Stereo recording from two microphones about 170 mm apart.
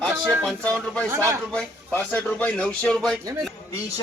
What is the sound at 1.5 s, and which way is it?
Speech, 10° left (ahead or behind).